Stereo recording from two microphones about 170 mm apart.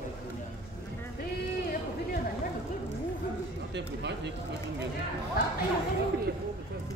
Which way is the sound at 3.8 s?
90° right.